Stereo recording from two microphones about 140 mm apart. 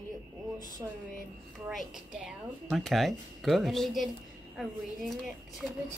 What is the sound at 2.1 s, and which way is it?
Speech, 5° right (ahead or behind).